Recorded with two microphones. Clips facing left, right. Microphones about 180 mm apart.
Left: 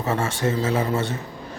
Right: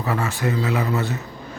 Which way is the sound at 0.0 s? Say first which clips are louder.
Left 1 dB; 25° left (ahead or behind).